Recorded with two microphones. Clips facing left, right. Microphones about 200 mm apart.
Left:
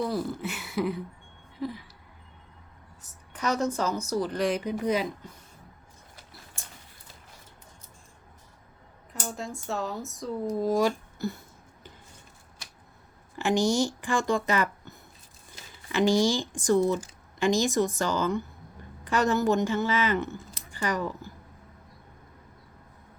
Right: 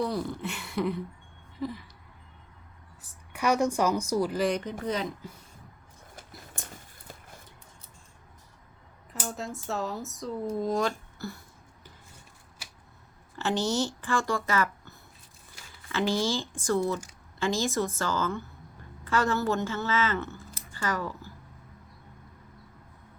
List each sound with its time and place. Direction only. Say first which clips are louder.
0.0 s speech: left 1 dB; centre (ahead or behind)
3.0 s speech: right 2 dB; 10° right (ahead or behind)
4.6 s speech: left 4 dB; 10° left (ahead or behind)
9.1 s speech: even; centre (ahead or behind)
11.2 s a sound: left 6 dB; 20° left (ahead or behind)
13.3 s speech: left 4 dB; 15° left (ahead or behind)